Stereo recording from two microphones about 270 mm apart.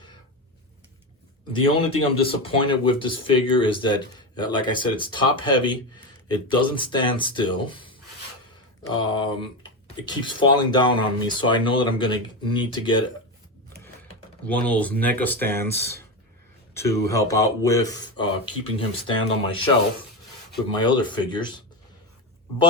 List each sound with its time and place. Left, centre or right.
1.5 s a man's voice: centre
14.7 s speech: centre
20.7 s speech: centre